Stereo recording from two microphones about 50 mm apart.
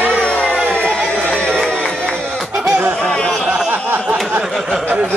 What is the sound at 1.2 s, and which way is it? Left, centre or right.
Music, centre.